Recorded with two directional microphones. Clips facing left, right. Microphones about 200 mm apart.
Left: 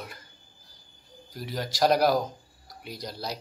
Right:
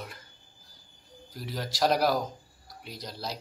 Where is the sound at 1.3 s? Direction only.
Centre (ahead or behind).